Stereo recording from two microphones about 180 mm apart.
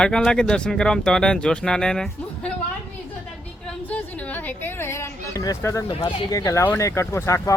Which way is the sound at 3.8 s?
10° left (ahead or behind).